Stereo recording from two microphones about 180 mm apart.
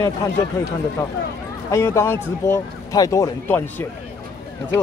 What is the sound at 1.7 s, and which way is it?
Speech, 15° left (ahead or behind).